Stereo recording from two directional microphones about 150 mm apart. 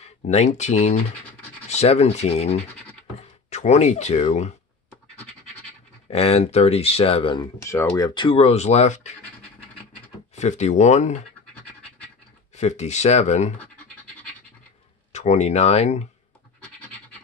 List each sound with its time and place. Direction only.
0.3 s speech: 50° left (ahead or behind)
6.0 s speech: 40° left (ahead or behind)
7.5 s speech: 20° left (ahead or behind)
8.1 s speech: 35° left (ahead or behind); by 9.1 s 50° left (ahead or behind)
10.3 s speech: 50° left (ahead or behind)
12.5 s speech: 50° left (ahead or behind)
15.1 s speech: 50° left (ahead or behind)